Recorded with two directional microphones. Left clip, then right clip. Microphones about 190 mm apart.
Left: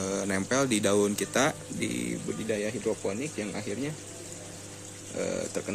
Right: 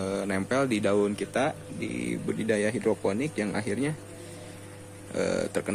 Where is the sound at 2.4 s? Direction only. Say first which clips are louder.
Right 4 dB; 20° right (ahead or behind).